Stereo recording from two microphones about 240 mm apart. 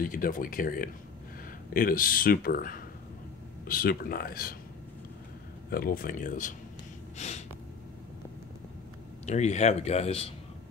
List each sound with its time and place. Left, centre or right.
0.0 s speech: left
5.7 s speech: left
9.2 s a man's voice: left